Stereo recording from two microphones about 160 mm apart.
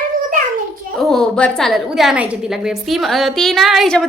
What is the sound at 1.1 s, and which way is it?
A woman's voice, 5° left (ahead or behind).